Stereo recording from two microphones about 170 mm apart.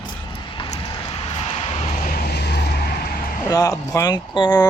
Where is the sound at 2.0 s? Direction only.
65° left (ahead or behind).